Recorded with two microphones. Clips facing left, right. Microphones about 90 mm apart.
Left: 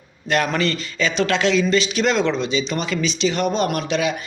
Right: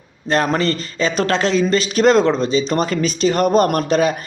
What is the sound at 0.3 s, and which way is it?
Speech, 35° right (ahead or behind).